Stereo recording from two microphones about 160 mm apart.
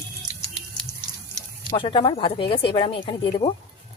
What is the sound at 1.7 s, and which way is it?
Speech, 35° left (ahead or behind).